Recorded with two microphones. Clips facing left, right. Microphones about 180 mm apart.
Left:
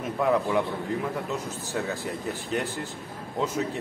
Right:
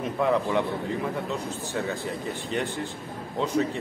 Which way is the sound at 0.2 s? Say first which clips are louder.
Even; centre (ahead or behind).